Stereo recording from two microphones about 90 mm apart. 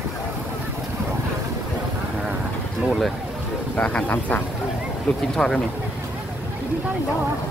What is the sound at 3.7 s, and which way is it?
Speech, 15° left (ahead or behind).